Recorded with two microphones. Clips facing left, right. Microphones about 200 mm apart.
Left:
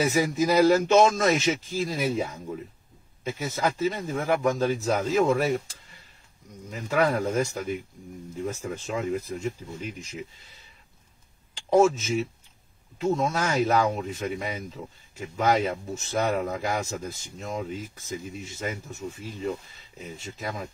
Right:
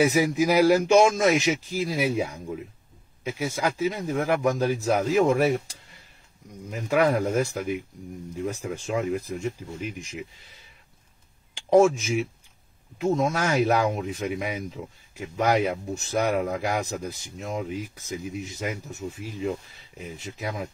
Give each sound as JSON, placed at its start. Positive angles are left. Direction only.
{"t": 0.0, "sound": "speech", "side_deg": -15}
{"t": 9.2, "sound": "speech", "side_deg": 0}
{"t": 11.9, "sound": "speech", "side_deg": -15}